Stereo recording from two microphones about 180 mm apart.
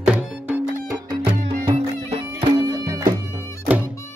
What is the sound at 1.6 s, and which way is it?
Music, 30° right (ahead or behind).